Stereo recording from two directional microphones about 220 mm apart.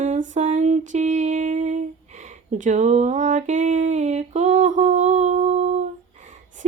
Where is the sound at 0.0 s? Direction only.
35° right (ahead or behind).